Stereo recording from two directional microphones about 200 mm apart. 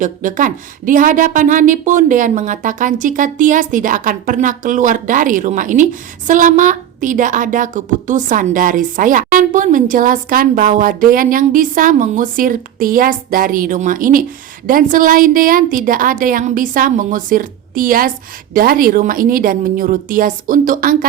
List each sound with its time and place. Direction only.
0.0 s a woman's voice: 40° right (ahead or behind)